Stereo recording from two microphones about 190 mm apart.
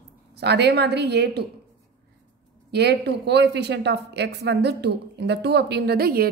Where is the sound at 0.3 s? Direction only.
60° right (ahead or behind).